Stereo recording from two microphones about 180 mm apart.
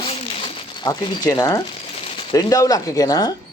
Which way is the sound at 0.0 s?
30° left (ahead or behind).